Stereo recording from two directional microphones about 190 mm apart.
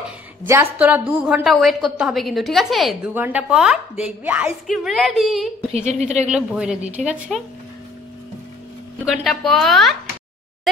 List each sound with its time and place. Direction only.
0.5 s a woman's voice: 10° right (ahead or behind)
5.7 s a woman's voice: 35° right (ahead or behind)
6.2 s a woman's voice: 5° right (ahead or behind)
9.0 s a woman's voice: centre (ahead or behind)